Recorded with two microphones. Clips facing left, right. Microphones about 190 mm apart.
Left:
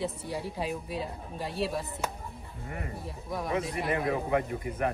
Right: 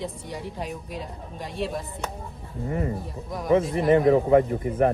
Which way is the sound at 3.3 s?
Centre (ahead or behind).